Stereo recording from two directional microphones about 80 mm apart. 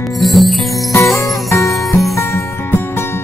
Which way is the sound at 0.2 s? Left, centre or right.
Centre.